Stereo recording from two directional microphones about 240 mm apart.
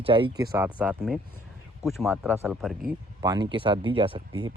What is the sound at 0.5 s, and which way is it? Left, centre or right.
Speech, centre.